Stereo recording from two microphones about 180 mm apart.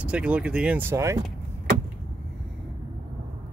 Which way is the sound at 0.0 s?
5° right (ahead or behind).